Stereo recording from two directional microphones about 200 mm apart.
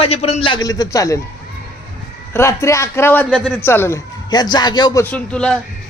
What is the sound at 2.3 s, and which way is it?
A man's voice, 15° left (ahead or behind).